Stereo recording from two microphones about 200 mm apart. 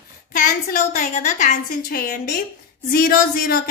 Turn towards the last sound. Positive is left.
turn(degrees=45)  # may be behind; listen again after turning